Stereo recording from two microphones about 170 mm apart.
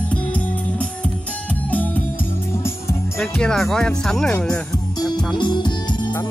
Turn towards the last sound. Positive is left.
turn(degrees=25)  # may be behind; listen again after turning